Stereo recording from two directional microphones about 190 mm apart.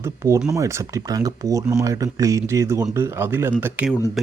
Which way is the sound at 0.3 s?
15° right (ahead or behind).